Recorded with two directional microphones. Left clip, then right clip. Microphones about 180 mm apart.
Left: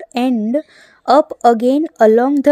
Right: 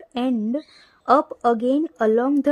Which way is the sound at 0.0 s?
30° left (ahead or behind).